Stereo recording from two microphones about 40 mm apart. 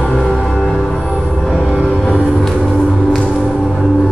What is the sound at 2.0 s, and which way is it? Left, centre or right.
Music, left.